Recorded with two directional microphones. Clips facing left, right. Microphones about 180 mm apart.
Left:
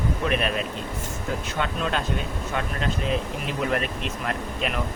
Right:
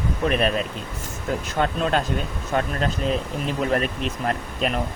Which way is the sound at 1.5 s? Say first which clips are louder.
Right 6 dB; 40° right (ahead or behind).